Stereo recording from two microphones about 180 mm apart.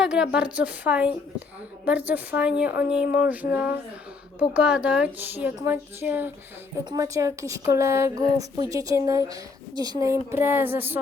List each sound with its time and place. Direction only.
0.0 s speech: 5° right (ahead or behind)
2.4 s speech: 5° right (ahead or behind)